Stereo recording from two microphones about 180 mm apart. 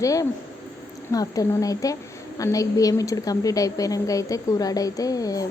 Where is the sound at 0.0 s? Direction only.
20° left (ahead or behind).